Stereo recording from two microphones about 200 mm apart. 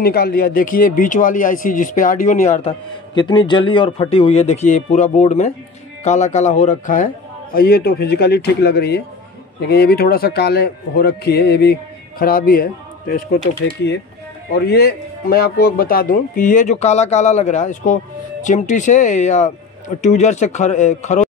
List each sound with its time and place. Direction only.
0.0 s a man's voice: 50° left (ahead or behind); by 2.7 s 35° left (ahead or behind)
3.2 s a man's voice: 20° left (ahead or behind); by 7.1 s 40° left (ahead or behind)
7.5 s a man's voice: 50° left (ahead or behind)